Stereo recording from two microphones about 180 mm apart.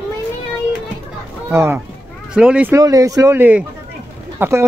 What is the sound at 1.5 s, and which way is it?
Speech, 15° right (ahead or behind).